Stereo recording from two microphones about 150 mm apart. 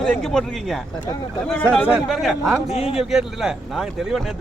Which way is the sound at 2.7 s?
45° left (ahead or behind).